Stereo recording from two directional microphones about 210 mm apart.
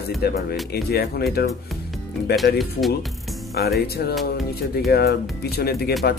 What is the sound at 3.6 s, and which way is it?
Speech, 50° left (ahead or behind).